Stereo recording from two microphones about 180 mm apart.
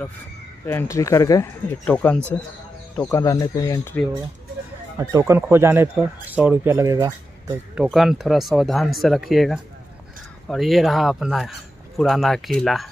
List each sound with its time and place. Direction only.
0.7 s speech: 15° left (ahead or behind)
1.9 s speech: 5° left (ahead or behind)
3.1 s speech: 15° left (ahead or behind)
4.9 s speech: 15° right (ahead or behind)
7.7 s speech: 5° right (ahead or behind)